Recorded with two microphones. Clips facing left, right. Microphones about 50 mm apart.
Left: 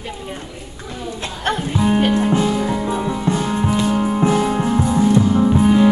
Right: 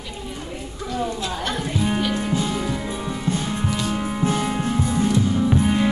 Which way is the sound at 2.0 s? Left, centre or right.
Left.